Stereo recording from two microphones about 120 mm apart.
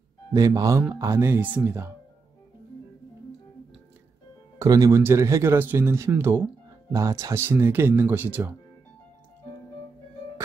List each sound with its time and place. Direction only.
0.3 s speech: 30° right (ahead or behind)
4.6 s speech: 25° right (ahead or behind)